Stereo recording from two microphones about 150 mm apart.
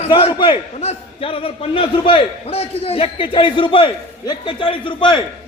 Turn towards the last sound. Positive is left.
turn(degrees=35)  # may be behind; listen again after turning